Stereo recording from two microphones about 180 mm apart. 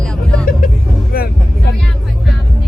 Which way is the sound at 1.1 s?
55° left (ahead or behind).